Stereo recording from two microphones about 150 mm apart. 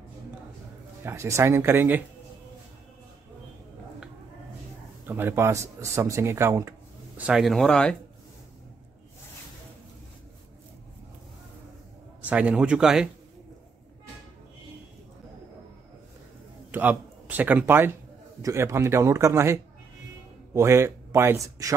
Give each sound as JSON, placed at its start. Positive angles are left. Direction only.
{"t": 1.0, "sound": "speech", "side_deg": -20}
{"t": 5.0, "sound": "speech", "side_deg": -15}
{"t": 7.2, "sound": "speech", "side_deg": -5}
{"t": 12.2, "sound": "speech", "side_deg": -10}
{"t": 16.7, "sound": "speech", "side_deg": -10}